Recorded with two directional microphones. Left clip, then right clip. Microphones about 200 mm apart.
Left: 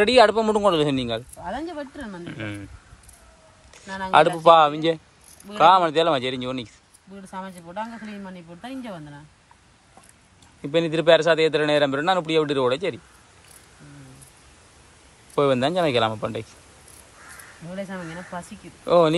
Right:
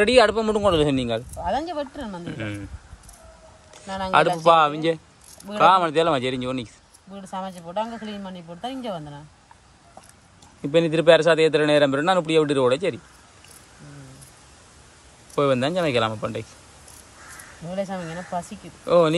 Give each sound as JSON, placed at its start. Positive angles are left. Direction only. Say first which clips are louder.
{"t": 0.0, "sound": "speech", "louder": "left 1 dB", "side_deg": -5}
{"t": 1.4, "sound": "speech", "louder": "right 5 dB", "side_deg": -20}
{"t": 2.2, "sound": "a man's voice", "louder": "right 1 dB", "side_deg": -10}
{"t": 3.7, "sound": "a man's voice", "louder": "left 2 dB", "side_deg": -10}
{"t": 8.5, "sound": "speech", "louder": "right 6 dB", "side_deg": -40}
{"t": 10.6, "sound": "a man's voice", "louder": "right 2 dB", "side_deg": -10}
{"t": 15.3, "sound": "speech", "louder": "left 1 dB", "side_deg": -5}
{"t": 17.9, "sound": "speech", "louder": "right 4 dB", "side_deg": -35}
{"t": 18.9, "sound": "speech", "louder": "even", "side_deg": -5}